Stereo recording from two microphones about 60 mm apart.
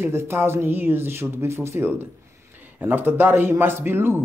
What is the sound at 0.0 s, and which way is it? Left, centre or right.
A man's voice, right.